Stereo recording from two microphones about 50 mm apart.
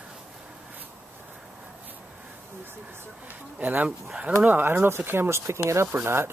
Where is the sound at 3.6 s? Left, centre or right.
Right.